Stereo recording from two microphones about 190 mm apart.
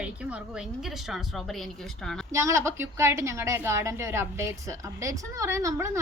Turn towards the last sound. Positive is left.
turn(degrees=-15)  # may be behind; listen again after turning